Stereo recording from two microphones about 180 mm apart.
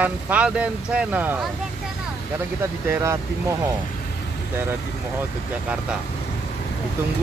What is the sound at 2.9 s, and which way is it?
Speech, 15° right (ahead or behind).